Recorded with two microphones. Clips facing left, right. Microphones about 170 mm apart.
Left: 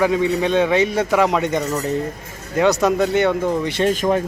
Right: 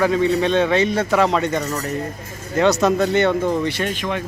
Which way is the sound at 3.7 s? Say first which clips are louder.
Left 6 dB; 35° left (ahead or behind).